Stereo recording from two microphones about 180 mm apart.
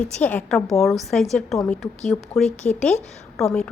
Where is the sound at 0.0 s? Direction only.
10° left (ahead or behind).